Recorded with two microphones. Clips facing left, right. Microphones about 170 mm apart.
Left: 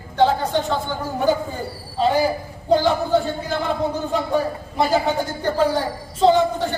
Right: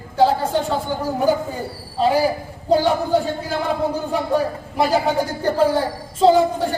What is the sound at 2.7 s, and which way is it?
Speech, 10° right (ahead or behind).